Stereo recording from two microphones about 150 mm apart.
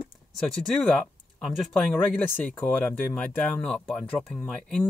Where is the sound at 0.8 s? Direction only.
Centre (ahead or behind).